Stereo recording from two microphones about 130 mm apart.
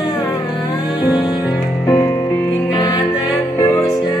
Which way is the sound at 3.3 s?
20° left (ahead or behind).